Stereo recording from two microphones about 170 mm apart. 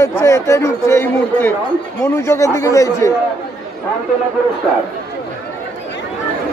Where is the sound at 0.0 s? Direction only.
20° left (ahead or behind).